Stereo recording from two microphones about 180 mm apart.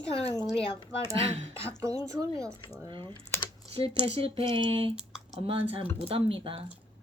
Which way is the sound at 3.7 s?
30° right (ahead or behind).